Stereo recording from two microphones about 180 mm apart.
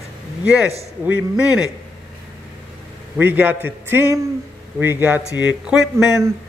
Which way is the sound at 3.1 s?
10° right (ahead or behind).